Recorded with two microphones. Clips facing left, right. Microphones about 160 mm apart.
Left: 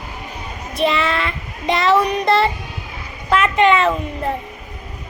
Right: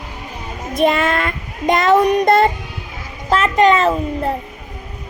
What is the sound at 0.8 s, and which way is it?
A child's voice, 50° right (ahead or behind).